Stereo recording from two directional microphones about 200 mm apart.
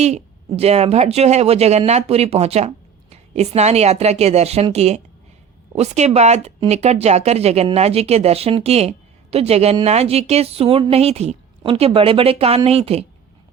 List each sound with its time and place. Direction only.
0.0 s speech: 35° right (ahead or behind)